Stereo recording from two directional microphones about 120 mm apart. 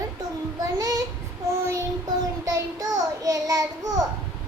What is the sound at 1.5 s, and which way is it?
Child singing, 25° right (ahead or behind).